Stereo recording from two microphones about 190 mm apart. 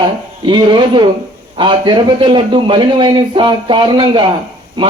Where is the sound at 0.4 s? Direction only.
25° right (ahead or behind).